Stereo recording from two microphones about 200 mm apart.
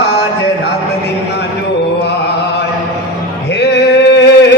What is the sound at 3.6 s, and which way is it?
Male singing, 55° left (ahead or behind).